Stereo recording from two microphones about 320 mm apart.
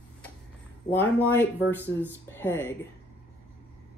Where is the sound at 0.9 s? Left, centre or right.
Centre.